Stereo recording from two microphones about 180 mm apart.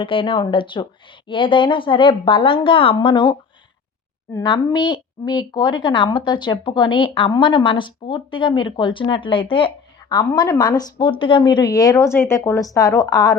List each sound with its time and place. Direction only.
0.0 s a woman's voice: 30° left (ahead or behind)
4.4 s a woman's voice: 25° left (ahead or behind)